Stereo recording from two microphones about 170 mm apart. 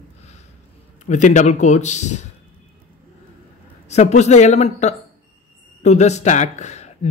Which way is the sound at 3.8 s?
40° left (ahead or behind).